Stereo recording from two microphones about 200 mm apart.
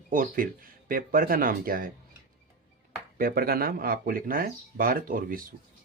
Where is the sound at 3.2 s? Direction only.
45° right (ahead or behind).